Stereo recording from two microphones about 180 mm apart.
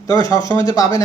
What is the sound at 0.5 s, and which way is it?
Speech, 20° left (ahead or behind).